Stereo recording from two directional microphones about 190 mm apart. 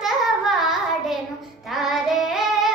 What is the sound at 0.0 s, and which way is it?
Child singing, centre (ahead or behind).